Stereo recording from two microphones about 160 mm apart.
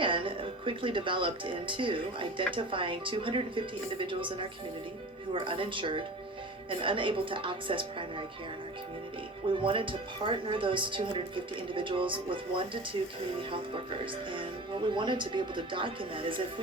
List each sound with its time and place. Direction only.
0.0 s speech: 30° right (ahead or behind)
9.6 s speech: 30° right (ahead or behind)